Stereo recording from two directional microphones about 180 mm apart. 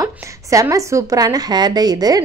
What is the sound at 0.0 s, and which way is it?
A woman's voice, 20° right (ahead or behind).